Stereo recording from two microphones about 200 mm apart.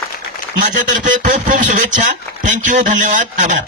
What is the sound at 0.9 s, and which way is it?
Speech, 40° right (ahead or behind).